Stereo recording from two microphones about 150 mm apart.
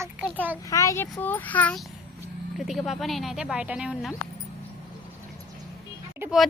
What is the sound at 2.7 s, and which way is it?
Speech, centre (ahead or behind).